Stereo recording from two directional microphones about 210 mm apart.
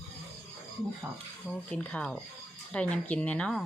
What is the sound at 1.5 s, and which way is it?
Speech, 5° left (ahead or behind).